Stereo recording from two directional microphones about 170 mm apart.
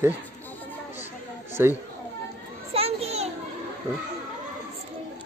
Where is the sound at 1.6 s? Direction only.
15° right (ahead or behind).